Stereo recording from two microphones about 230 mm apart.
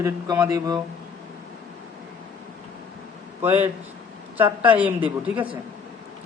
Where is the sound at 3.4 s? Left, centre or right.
Centre.